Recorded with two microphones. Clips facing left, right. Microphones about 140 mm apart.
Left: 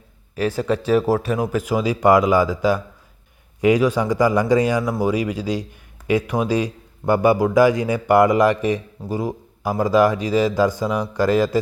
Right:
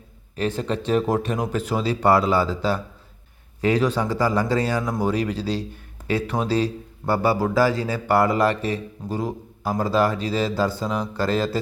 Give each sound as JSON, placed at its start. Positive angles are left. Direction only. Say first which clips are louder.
{"t": 0.3, "sound": "speech", "louder": "left 4 dB", "side_deg": 10}